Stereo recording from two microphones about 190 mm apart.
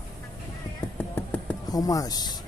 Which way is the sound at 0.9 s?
10° left (ahead or behind).